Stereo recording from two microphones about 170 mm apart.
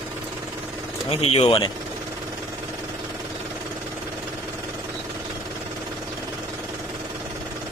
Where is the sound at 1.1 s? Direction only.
35° left (ahead or behind).